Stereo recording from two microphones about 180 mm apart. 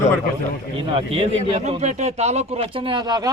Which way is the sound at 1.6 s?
40° right (ahead or behind).